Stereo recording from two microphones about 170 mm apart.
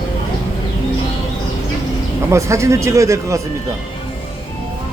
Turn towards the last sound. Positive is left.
turn(degrees=-20)  # may be behind; listen again after turning